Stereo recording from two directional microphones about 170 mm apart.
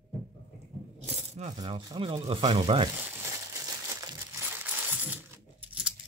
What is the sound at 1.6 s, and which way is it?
Speech, 25° right (ahead or behind).